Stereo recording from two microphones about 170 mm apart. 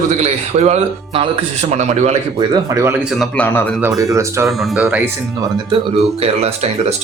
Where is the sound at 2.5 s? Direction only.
20° right (ahead or behind).